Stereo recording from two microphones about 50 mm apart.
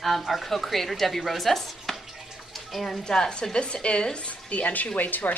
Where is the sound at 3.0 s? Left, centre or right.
Centre.